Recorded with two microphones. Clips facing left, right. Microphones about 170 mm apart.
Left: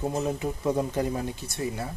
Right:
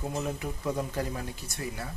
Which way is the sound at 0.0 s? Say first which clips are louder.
Left 5 dB; 25° left (ahead or behind).